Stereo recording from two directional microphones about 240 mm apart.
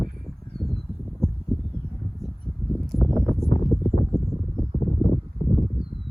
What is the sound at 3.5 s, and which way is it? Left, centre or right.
Horse, left.